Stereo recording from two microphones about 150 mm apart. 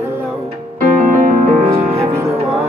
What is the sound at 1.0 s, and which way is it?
Music, 65° right (ahead or behind).